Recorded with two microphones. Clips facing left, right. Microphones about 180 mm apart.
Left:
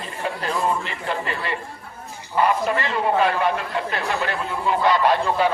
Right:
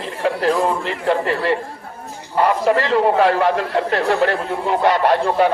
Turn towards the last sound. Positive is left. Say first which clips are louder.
# right 4 dB
turn(degrees=-55)  # may be behind; listen again after turning